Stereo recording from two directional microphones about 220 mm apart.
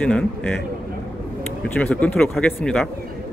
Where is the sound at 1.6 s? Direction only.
5° left (ahead or behind).